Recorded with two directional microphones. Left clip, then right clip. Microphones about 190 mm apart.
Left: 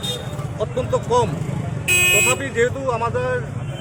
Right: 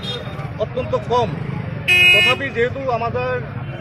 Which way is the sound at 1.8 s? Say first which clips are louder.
Right 5 dB; 65° left (ahead or behind).